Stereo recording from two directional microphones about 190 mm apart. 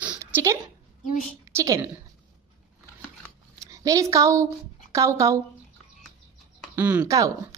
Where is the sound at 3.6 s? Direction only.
15° right (ahead or behind).